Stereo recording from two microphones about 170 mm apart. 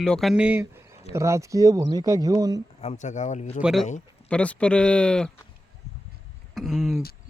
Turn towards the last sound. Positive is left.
turn(degrees=0)  # may be behind; listen again after turning